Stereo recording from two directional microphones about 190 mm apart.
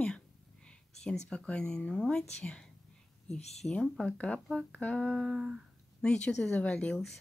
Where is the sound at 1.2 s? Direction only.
5° left (ahead or behind).